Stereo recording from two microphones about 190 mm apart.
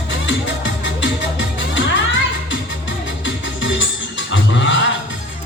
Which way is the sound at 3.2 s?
75° left (ahead or behind).